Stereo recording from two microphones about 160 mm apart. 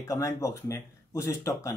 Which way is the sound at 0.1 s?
20° left (ahead or behind).